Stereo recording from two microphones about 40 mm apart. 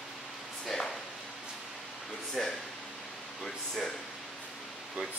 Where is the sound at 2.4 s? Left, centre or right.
Centre.